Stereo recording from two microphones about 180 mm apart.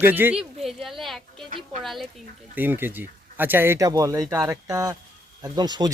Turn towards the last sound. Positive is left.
turn(degrees=-25)  # may be behind; listen again after turning